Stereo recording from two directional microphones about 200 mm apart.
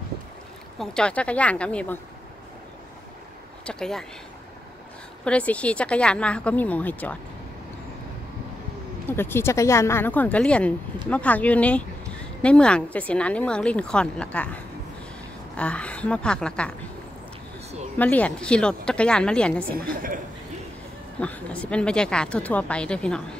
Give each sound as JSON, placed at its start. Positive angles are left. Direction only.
{"t": 0.7, "sound": "a woman's voice", "side_deg": 5}
{"t": 3.6, "sound": "a woman's voice", "side_deg": 5}
{"t": 5.2, "sound": "a woman's voice", "side_deg": 5}
{"t": 9.1, "sound": "a woman's voice", "side_deg": 10}
{"t": 17.9, "sound": "a woman's voice", "side_deg": 10}
{"t": 19.7, "sound": "a woman's voice", "side_deg": -45}
{"t": 21.2, "sound": "a woman's voice", "side_deg": 5}